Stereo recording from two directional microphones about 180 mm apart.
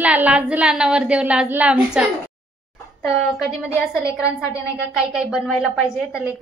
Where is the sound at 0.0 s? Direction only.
10° right (ahead or behind).